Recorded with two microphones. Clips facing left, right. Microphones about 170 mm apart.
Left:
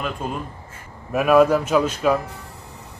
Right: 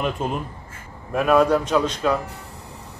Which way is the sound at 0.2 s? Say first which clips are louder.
Right 3 dB; 25° right (ahead or behind).